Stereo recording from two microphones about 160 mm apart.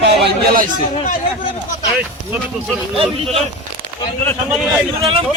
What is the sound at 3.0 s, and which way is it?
Speech, 35° right (ahead or behind).